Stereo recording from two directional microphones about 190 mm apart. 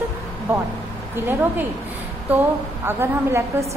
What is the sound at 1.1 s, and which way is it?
Speech, 10° right (ahead or behind).